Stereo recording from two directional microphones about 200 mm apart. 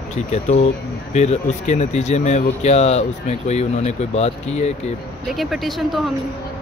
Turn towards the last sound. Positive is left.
turn(degrees=0)  # may be behind; listen again after turning